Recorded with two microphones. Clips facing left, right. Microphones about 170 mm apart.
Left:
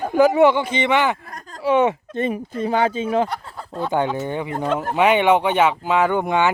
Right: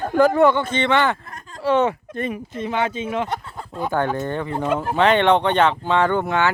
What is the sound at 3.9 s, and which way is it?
Speech, 15° left (ahead or behind).